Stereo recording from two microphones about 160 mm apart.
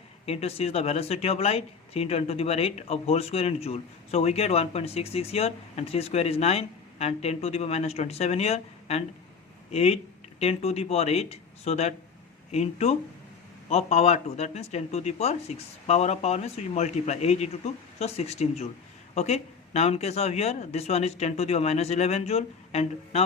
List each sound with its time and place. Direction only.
0.3 s speech: 40° left (ahead or behind)